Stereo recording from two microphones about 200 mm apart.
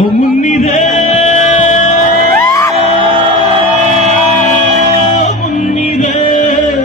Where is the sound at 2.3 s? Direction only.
15° left (ahead or behind).